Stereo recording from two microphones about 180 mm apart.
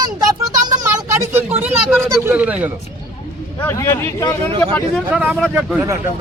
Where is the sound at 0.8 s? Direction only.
15° right (ahead or behind).